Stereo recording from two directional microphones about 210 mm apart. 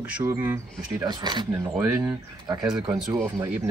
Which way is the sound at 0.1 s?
10° right (ahead or behind).